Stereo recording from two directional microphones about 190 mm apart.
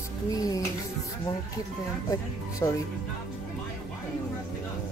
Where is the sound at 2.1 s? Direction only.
15° left (ahead or behind).